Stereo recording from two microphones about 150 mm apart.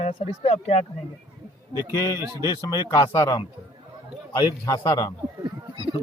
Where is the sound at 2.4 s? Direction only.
25° left (ahead or behind).